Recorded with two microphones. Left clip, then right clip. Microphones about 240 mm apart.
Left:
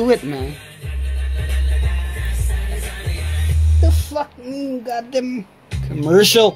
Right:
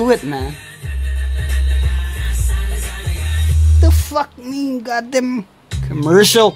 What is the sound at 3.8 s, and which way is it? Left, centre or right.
Music, right.